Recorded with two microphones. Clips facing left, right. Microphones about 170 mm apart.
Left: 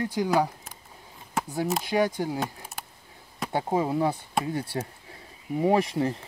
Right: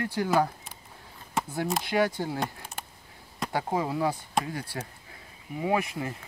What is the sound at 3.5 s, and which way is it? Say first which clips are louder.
Speech: left 3 dB; 25° left (ahead or behind).